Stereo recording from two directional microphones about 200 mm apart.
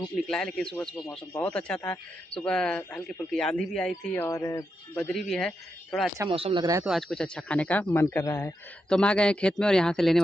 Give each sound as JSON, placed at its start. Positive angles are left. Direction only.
{"t": 0.3, "sound": "a man's voice", "side_deg": 5}
{"t": 4.9, "sound": "a man's voice", "side_deg": 5}
{"t": 6.3, "sound": "speech", "side_deg": -30}
{"t": 6.6, "sound": "speech", "side_deg": -15}
{"t": 6.9, "sound": "a man's voice", "side_deg": 0}